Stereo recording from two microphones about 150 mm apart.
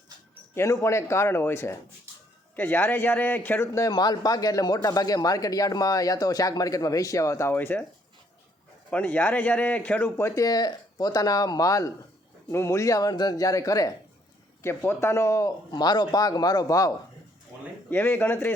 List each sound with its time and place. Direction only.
0.5 s a man's voice: 15° left (ahead or behind)
8.9 s a man's voice: 10° left (ahead or behind)